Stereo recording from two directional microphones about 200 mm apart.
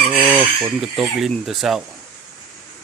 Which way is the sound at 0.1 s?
5° right (ahead or behind).